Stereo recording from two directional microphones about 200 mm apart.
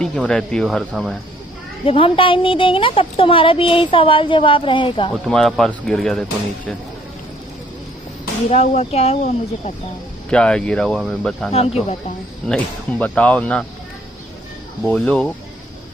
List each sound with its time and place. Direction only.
0.0 s speech: 5° left (ahead or behind)
1.9 s speech: 25° left (ahead or behind)
5.1 s speech: centre (ahead or behind)
8.5 s speech: 35° left (ahead or behind)
10.3 s speech: 5° left (ahead or behind)
11.5 s speech: 30° left (ahead or behind)
12.4 s speech: centre (ahead or behind)
14.9 s speech: 5° left (ahead or behind)